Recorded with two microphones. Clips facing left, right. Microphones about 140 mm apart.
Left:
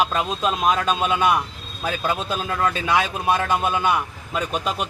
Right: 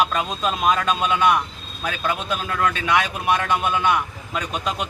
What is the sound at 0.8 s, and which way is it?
A man's voice, 30° left (ahead or behind).